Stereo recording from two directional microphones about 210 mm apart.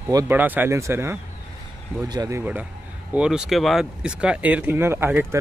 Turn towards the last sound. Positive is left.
turn(degrees=-10)  # may be behind; listen again after turning